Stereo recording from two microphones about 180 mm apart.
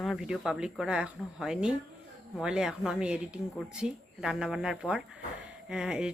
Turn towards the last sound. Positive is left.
turn(degrees=-5)  # may be behind; listen again after turning